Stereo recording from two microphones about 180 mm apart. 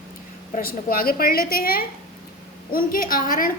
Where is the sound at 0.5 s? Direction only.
55° left (ahead or behind).